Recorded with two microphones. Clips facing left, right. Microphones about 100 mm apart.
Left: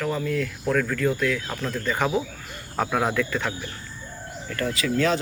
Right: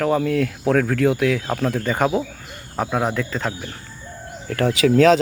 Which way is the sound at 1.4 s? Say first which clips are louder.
Right 8 dB; 40° right (ahead or behind).